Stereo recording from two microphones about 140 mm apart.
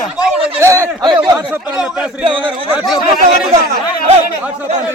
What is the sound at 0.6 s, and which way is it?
Speech, 20° right (ahead or behind).